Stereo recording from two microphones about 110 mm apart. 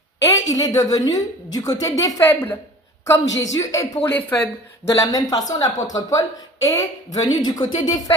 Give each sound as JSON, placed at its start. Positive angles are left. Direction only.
{"t": 0.3, "sound": "a woman's voice", "side_deg": 30}
{"t": 2.3, "sound": "a woman's voice", "side_deg": 20}
{"t": 3.1, "sound": "speech", "side_deg": 30}
{"t": 4.9, "sound": "a woman's voice", "side_deg": 35}